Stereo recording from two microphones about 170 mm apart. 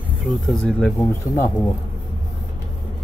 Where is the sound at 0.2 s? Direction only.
Centre (ahead or behind).